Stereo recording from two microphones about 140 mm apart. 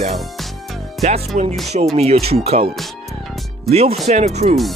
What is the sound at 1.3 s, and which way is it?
Speech, 60° right (ahead or behind).